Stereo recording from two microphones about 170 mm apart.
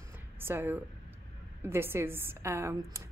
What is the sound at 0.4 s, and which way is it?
A woman's voice, 15° right (ahead or behind).